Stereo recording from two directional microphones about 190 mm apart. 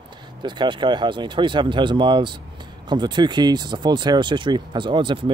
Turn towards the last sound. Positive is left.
turn(degrees=-25)  # may be behind; listen again after turning